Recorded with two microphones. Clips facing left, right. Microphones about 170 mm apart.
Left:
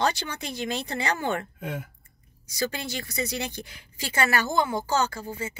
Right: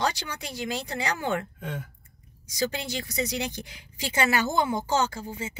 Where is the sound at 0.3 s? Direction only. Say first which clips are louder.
Left 1 dB; 10° right (ahead or behind).